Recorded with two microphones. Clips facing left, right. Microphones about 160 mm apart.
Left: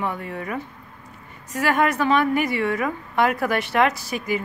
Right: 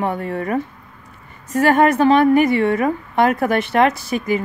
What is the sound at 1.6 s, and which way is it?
A woman's voice, 30° right (ahead or behind).